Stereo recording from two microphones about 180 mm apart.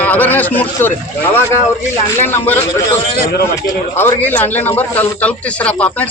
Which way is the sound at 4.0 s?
10° left (ahead or behind).